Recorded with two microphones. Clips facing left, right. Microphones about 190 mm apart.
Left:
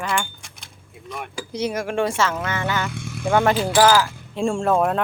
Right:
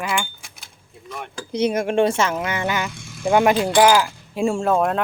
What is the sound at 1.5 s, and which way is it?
Speech, 20° right (ahead or behind).